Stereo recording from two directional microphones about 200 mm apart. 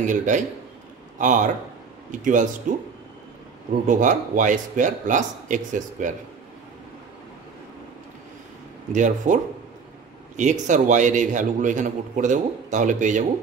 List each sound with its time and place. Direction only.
0.0 s a man's voice: 40° right (ahead or behind)
8.9 s a man's voice: 40° right (ahead or behind)